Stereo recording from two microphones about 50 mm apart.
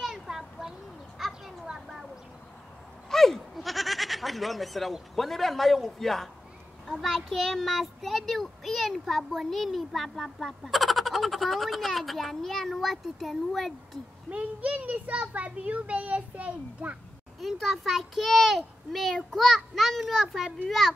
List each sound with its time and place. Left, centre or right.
0.0 s children playing: centre
1.7 s a sound: centre
3.1 s a child's voice: centre
14.3 s a child's voice: right
17.4 s a child's voice: centre